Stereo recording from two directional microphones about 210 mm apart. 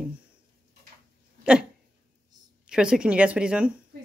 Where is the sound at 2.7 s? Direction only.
5° right (ahead or behind).